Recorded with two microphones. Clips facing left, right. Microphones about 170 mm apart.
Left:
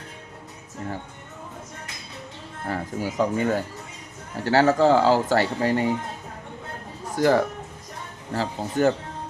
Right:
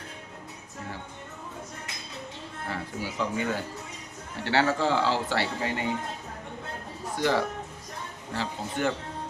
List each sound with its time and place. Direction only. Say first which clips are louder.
2.6 s speech: left 7 dB; 45° left (ahead or behind)
7.2 s speech: left 6 dB; 45° left (ahead or behind)